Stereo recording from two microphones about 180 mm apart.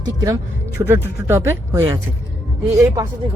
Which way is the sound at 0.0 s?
20° right (ahead or behind).